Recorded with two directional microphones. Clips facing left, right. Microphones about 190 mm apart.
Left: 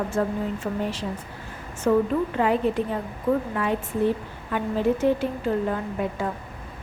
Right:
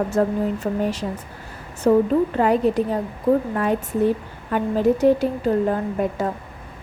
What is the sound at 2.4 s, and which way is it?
A woman's voice, 40° right (ahead or behind).